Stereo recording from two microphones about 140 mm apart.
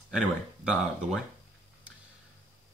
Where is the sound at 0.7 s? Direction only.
5° right (ahead or behind).